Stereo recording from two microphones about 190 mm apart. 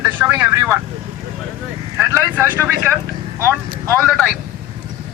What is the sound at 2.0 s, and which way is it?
Speech, 15° right (ahead or behind).